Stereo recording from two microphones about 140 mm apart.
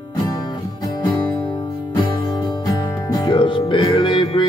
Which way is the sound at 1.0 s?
30° left (ahead or behind).